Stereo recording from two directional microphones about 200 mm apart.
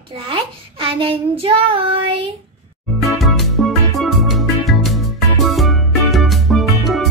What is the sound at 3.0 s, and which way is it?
Music, centre (ahead or behind).